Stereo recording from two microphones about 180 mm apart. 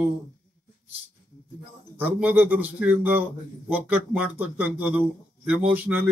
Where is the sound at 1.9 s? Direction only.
10° right (ahead or behind).